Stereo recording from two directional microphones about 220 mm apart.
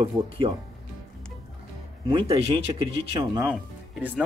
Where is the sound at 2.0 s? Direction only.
25° right (ahead or behind).